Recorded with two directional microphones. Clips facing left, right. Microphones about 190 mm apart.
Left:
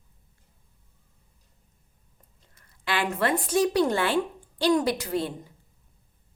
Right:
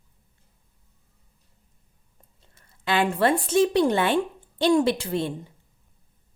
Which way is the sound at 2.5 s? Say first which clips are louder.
Right 5 dB; 25° right (ahead or behind).